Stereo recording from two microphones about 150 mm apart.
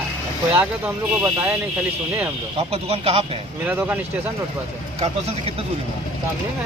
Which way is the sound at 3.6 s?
10° right (ahead or behind).